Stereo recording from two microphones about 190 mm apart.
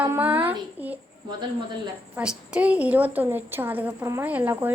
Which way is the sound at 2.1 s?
5° right (ahead or behind).